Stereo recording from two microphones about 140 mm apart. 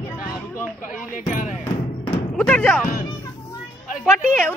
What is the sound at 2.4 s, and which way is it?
Speech, 10° left (ahead or behind).